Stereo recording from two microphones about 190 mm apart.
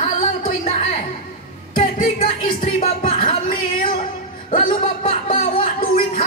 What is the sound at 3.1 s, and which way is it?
Music, 25° left (ahead or behind).